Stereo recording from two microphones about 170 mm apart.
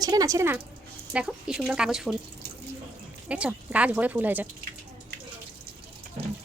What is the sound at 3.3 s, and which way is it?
Speech, 10° right (ahead or behind).